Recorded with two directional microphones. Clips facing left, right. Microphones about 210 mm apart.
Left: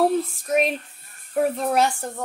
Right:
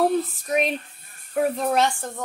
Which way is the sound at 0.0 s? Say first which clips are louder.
Left 1 dB; centre (ahead or behind).